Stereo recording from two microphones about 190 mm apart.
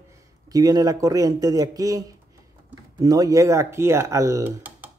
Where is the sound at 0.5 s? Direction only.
20° right (ahead or behind).